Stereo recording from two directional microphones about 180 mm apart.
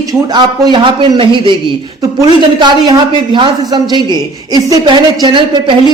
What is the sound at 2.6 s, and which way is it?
A woman's voice, 25° right (ahead or behind).